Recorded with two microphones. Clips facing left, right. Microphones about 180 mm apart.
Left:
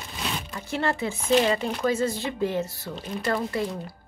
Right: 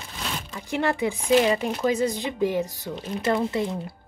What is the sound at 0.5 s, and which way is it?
Speech, 15° right (ahead or behind).